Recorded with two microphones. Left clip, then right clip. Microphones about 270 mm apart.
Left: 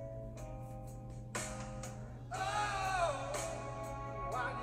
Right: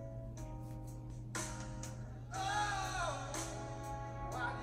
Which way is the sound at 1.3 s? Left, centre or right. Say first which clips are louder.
Left 2 dB; centre.